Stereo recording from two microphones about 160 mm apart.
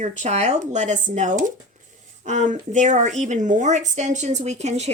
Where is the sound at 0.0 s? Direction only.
45° right (ahead or behind).